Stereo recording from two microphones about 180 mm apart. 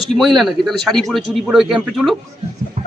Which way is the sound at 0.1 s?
Centre (ahead or behind).